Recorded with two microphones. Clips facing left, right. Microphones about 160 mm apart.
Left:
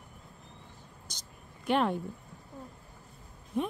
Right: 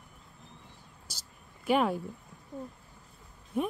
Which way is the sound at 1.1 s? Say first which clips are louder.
Left 2 dB; 5° right (ahead or behind).